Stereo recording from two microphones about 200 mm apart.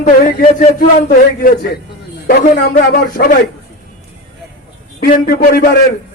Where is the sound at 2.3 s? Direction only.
45° left (ahead or behind).